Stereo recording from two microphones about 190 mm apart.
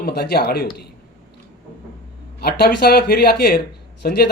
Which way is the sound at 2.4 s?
55° left (ahead or behind).